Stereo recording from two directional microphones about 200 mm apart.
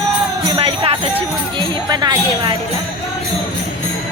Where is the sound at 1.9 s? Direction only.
20° right (ahead or behind).